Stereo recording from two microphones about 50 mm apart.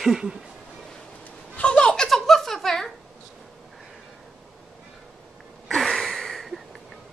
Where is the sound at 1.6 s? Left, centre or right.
Left.